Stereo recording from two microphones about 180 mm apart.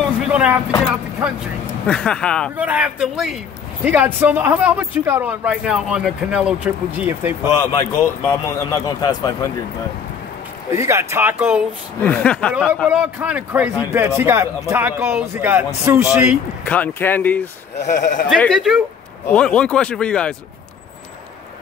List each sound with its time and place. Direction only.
0.3 s speech: 5° right (ahead or behind)
1.9 s speech: 5° left (ahead or behind)
2.5 s speech: 10° right (ahead or behind)
7.7 s speech: 15° left (ahead or behind)
10.8 s speech: 15° right (ahead or behind)
12.0 s speech: 5° left (ahead or behind)
12.8 s speech: 5° right (ahead or behind)
16.6 s speech: 10° left (ahead or behind)
17.8 s speech: 45° left (ahead or behind)
18.3 s speech: centre (ahead or behind)